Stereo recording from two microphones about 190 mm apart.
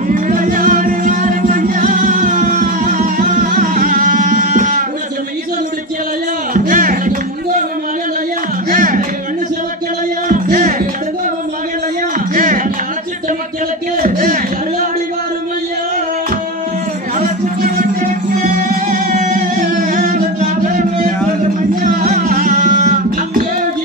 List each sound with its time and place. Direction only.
0.1 s music: 45° right (ahead or behind)
6.5 s music: 45° right (ahead or behind)
8.6 s a sound: 45° right (ahead or behind)
10.2 s music: 45° right (ahead or behind)
12.4 s music: 45° right (ahead or behind)
14.0 s a sound: 45° right (ahead or behind)
18.0 s music: 45° right (ahead or behind)